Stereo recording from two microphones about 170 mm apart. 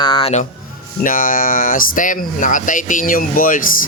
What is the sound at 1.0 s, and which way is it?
Speech, 55° left (ahead or behind).